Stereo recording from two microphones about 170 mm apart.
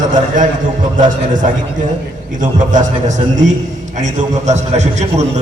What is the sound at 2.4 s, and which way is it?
A man's voice, 45° right (ahead or behind).